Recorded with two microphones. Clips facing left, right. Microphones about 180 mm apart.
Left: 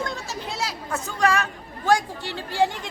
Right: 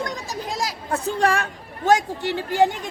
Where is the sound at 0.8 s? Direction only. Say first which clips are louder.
Right 2 dB; 30° right (ahead or behind).